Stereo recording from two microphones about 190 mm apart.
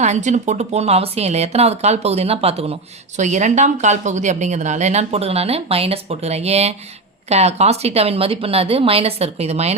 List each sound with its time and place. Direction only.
0.0 s a woman's voice: 40° right (ahead or behind)